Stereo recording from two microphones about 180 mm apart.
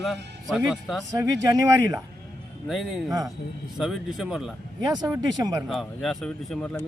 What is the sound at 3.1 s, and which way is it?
Speech, 20° right (ahead or behind).